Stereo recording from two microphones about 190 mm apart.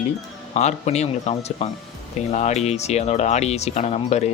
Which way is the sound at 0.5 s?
35° left (ahead or behind).